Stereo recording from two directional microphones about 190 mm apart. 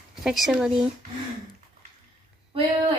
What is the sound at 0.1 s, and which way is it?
Speech, centre (ahead or behind).